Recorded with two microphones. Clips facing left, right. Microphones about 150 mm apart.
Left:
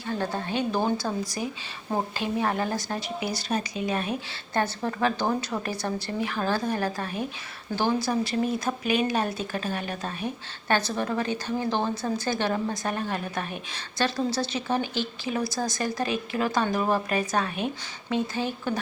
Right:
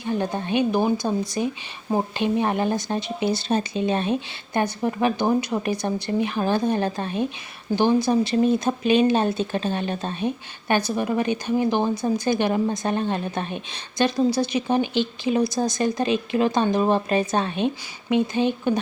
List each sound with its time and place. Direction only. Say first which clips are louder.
0.0 s a woman's voice: right 4 dB; 20° right (ahead or behind)
4.5 s a woman's voice: right 4 dB; 15° right (ahead or behind)